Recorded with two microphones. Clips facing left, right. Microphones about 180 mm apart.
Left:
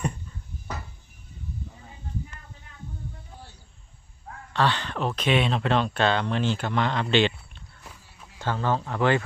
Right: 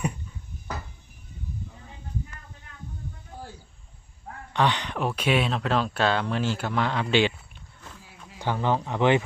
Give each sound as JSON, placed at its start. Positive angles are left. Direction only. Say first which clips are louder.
{"t": 4.5, "sound": "speech", "louder": "even", "side_deg": -15}